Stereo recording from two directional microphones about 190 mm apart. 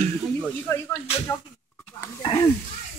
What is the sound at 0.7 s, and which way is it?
Speech, 5° left (ahead or behind).